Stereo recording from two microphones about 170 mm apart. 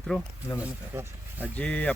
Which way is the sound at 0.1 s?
5° left (ahead or behind).